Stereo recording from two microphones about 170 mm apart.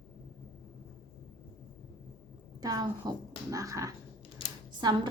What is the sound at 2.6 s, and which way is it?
A woman's voice, 20° right (ahead or behind).